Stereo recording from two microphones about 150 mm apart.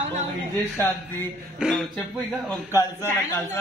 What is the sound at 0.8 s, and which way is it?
Speech, 15° left (ahead or behind).